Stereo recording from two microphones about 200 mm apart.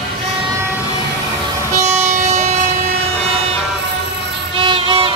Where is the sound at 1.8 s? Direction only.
35° right (ahead or behind).